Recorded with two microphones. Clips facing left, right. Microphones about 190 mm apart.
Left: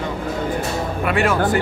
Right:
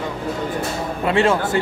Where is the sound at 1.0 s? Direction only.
25° right (ahead or behind).